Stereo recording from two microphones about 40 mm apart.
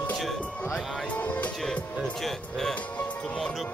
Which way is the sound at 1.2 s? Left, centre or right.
Left.